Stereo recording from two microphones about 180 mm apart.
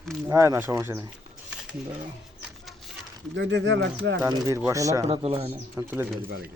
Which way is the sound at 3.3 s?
80° right.